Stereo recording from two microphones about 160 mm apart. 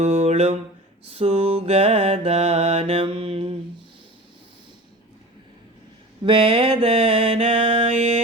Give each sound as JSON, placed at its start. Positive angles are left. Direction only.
{"t": 0.0, "sound": "mantra", "side_deg": -40}
{"t": 6.2, "sound": "mantra", "side_deg": -30}